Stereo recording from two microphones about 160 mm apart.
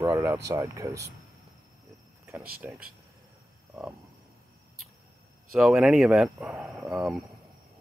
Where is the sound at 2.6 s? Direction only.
15° right (ahead or behind).